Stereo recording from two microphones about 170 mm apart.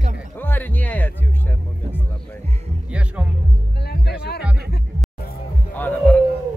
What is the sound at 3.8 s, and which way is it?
Music, 70° left (ahead or behind).